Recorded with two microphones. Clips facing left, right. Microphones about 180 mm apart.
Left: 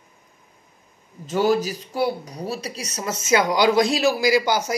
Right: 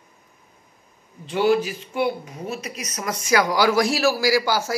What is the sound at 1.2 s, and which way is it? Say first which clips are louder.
Speech: even; 40° left (ahead or behind).